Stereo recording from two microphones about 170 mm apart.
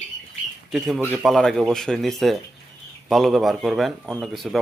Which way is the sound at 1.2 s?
Centre (ahead or behind).